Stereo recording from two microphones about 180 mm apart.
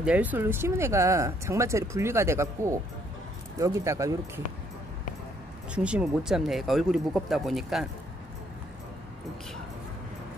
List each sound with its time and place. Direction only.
0.0 s speech: 10° right (ahead or behind)
5.8 s speech: 5° right (ahead or behind)